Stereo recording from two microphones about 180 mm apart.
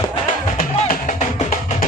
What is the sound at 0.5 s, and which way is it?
Music, 50° left (ahead or behind).